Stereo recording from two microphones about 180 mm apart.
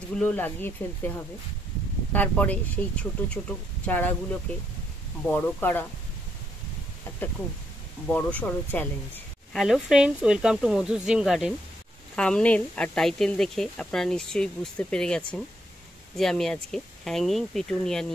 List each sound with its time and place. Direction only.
0.1 s speech: 10° left (ahead or behind)
2.1 s speech: 10° left (ahead or behind)
5.2 s speech: 10° left (ahead or behind)
8.1 s speech: 10° left (ahead or behind)
9.6 s speech: centre (ahead or behind)